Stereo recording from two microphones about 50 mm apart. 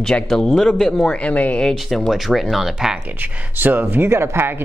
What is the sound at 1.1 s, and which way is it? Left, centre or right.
Speech, left.